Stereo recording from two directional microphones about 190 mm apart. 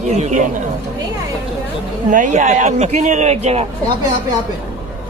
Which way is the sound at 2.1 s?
40° right (ahead or behind).